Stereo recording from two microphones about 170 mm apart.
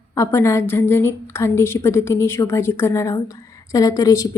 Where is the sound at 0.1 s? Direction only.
15° left (ahead or behind).